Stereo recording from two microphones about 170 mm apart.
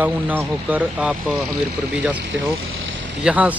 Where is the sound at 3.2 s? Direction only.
10° right (ahead or behind).